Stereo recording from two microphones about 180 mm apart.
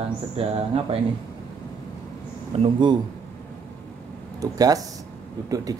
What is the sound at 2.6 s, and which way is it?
Speech, 25° right (ahead or behind).